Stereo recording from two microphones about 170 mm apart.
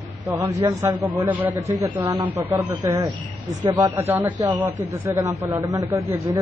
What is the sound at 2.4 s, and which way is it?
A man's voice, 15° right (ahead or behind).